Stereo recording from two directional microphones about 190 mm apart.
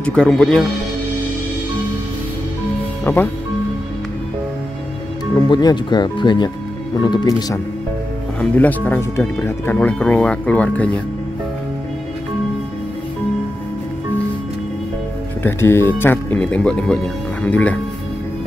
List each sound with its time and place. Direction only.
0.0 s speech: 5° left (ahead or behind)
3.0 s speech: 10° left (ahead or behind)
5.5 s speech: 20° left (ahead or behind)
8.4 s speech: 10° left (ahead or behind)
15.4 s speech: 10° left (ahead or behind)